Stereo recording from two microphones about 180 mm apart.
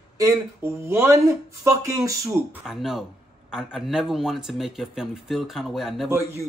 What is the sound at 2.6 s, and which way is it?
Speech, centre (ahead or behind).